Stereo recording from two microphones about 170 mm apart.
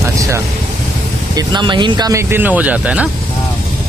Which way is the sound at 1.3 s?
25° right (ahead or behind).